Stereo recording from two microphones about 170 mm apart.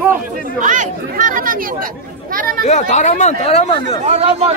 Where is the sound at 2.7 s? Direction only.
40° left (ahead or behind).